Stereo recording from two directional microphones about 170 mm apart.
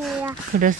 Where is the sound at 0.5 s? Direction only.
55° right (ahead or behind).